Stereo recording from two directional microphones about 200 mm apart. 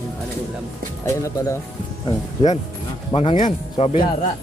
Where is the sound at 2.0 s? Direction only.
30° left (ahead or behind).